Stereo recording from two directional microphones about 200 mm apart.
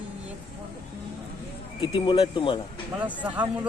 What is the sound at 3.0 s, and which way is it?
Speech, 10° right (ahead or behind).